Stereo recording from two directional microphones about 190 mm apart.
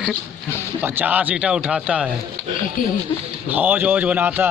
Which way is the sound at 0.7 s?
10° right (ahead or behind).